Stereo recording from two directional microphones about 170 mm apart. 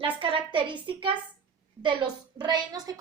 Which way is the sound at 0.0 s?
30° right (ahead or behind).